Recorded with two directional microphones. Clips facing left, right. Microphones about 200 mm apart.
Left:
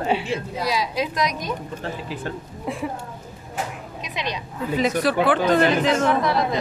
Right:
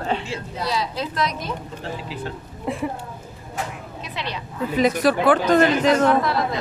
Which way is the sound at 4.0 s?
15° left (ahead or behind).